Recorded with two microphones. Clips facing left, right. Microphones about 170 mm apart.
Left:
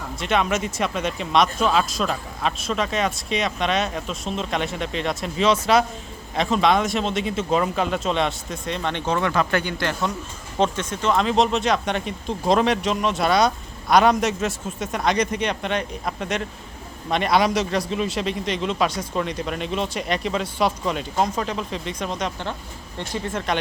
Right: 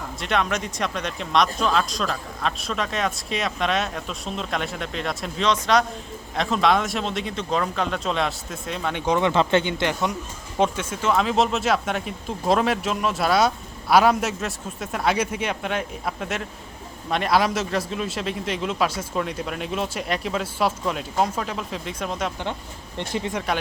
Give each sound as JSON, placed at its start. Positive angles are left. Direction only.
{"t": 0.2, "sound": "speech", "side_deg": 0}
{"t": 23.0, "sound": "speech", "side_deg": -20}